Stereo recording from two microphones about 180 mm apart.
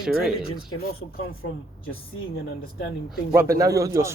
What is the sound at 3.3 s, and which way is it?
Speech, 15° right (ahead or behind).